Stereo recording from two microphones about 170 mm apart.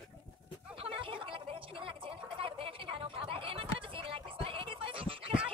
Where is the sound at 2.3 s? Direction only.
30° right (ahead or behind).